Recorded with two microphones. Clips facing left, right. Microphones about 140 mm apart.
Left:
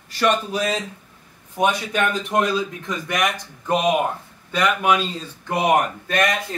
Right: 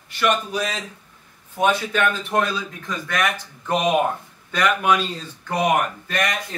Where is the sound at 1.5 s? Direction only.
15° left (ahead or behind).